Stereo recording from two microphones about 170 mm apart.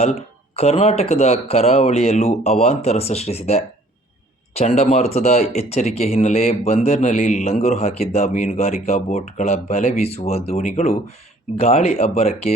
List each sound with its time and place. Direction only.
0.0 s speech: 35° left (ahead or behind)